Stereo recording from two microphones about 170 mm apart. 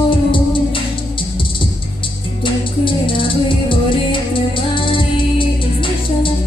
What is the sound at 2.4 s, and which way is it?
Music, 30° left (ahead or behind).